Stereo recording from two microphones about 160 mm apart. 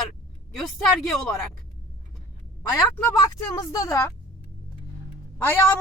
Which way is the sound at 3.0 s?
20° left (ahead or behind).